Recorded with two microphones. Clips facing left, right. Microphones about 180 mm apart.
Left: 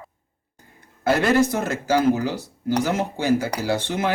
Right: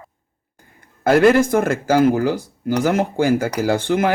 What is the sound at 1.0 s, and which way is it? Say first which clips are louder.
Speech: right 5 dB; 50° right (ahead or behind).